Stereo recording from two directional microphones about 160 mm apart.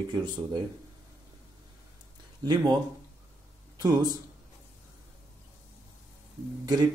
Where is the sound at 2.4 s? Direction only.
25° right (ahead or behind).